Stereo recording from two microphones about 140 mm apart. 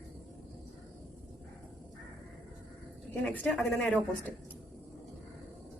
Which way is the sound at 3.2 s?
10° left (ahead or behind).